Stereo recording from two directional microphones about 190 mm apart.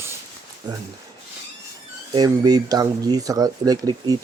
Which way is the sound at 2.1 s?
20° right (ahead or behind).